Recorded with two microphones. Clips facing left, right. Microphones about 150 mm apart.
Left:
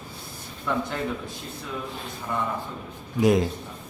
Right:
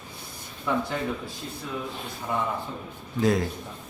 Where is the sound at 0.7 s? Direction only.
10° right (ahead or behind).